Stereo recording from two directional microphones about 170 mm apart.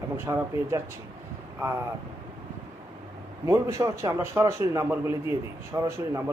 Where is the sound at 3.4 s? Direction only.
20° right (ahead or behind).